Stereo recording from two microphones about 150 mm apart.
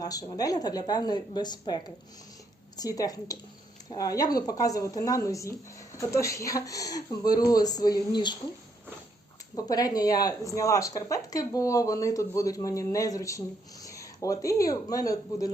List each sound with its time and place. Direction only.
0.0 s speech: 25° left (ahead or behind)
9.6 s speech: 25° left (ahead or behind)